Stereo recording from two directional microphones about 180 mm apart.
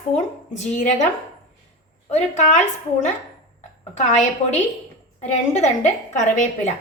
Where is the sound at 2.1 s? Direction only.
40° left (ahead or behind).